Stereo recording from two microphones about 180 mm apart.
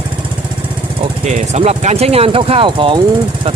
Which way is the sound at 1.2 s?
40° right (ahead or behind).